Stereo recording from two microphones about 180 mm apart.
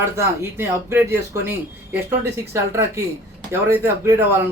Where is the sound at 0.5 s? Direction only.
10° right (ahead or behind).